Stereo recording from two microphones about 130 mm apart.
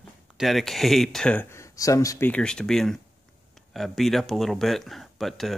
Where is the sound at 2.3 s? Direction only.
5° left (ahead or behind).